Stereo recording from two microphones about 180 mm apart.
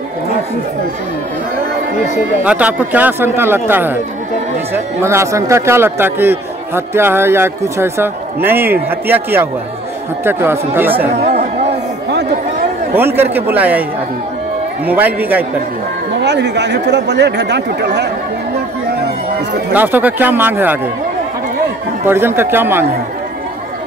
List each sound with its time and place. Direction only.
2.4 s a man's voice: 10° right (ahead or behind)
12.9 s a man's voice: 10° right (ahead or behind)
14.9 s a man's voice: 10° right (ahead or behind)
16.2 s speech: 70° right (ahead or behind)
19.7 s a man's voice: 10° right (ahead or behind)
22.0 s a man's voice: 10° right (ahead or behind)